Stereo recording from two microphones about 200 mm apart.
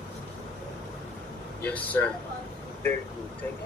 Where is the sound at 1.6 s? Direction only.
5° left (ahead or behind).